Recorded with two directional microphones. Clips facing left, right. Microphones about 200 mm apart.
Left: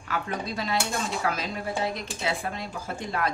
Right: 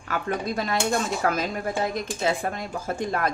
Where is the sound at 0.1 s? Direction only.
50° right (ahead or behind).